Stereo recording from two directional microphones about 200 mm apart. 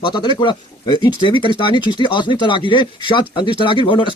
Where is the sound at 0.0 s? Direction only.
20° left (ahead or behind).